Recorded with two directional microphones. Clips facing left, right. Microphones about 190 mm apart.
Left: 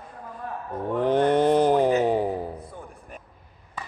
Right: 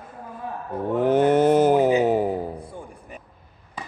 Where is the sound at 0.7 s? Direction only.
5° right (ahead or behind).